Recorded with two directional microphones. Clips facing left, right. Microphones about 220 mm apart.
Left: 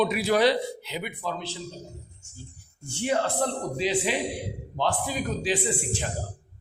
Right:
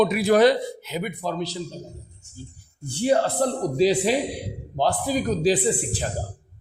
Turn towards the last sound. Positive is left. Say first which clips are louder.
# right 4 dB
turn(degrees=-35)  # may be behind; listen again after turning